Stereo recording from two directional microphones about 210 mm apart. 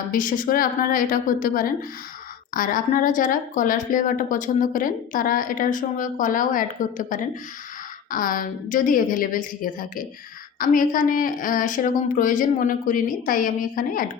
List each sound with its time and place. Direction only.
0.1 s a woman's voice: 40° left (ahead or behind)